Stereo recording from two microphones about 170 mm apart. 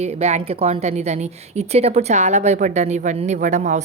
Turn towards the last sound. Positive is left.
turn(degrees=-45)  # may be behind; listen again after turning